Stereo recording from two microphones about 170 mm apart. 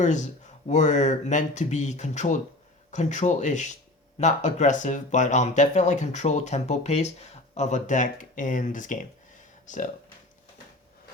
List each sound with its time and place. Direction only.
0.0 s speech: 45° left (ahead or behind)